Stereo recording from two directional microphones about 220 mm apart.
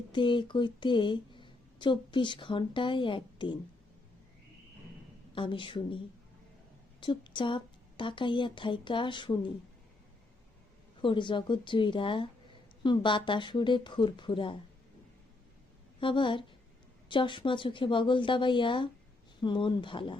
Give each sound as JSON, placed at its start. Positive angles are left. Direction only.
{"t": 0.1, "sound": "speech", "side_deg": 20}
{"t": 5.3, "sound": "a woman's voice", "side_deg": 25}
{"t": 7.0, "sound": "a woman's voice", "side_deg": 20}
{"t": 11.0, "sound": "a woman's voice", "side_deg": 20}
{"t": 16.0, "sound": "a woman's voice", "side_deg": 20}